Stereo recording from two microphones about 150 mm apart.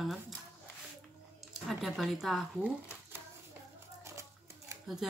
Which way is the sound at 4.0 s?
20° right (ahead or behind).